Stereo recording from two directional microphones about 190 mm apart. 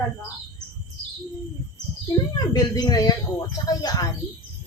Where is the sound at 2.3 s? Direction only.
20° left (ahead or behind).